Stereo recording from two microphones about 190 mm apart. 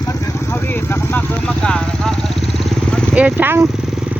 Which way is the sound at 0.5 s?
10° left (ahead or behind).